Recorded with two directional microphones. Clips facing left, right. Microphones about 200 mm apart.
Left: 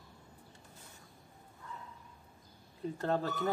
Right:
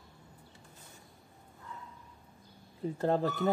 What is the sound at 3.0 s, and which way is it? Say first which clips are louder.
Speech: right 4 dB; 25° right (ahead or behind).